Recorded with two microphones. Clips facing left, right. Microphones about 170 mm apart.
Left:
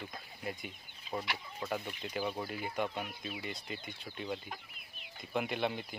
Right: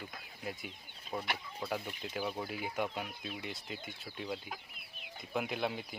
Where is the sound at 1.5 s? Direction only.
10° right (ahead or behind).